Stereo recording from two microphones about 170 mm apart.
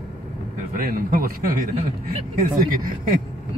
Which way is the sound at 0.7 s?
55° right (ahead or behind).